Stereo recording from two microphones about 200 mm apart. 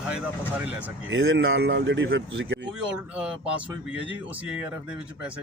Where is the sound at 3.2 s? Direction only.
5° right (ahead or behind).